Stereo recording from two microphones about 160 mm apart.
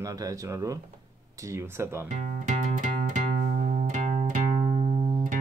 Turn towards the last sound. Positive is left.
turn(degrees=-45)  # may be behind; listen again after turning